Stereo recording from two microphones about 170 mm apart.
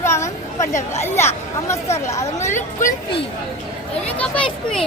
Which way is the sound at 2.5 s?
50° left (ahead or behind).